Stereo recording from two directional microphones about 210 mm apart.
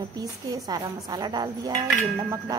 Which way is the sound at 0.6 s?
20° right (ahead or behind).